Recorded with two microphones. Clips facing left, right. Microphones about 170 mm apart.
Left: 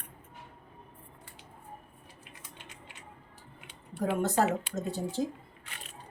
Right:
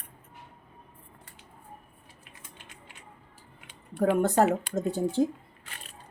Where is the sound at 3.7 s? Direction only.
55° right (ahead or behind).